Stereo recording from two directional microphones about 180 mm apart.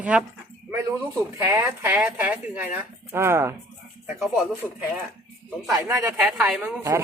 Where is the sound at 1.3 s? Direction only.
15° right (ahead or behind).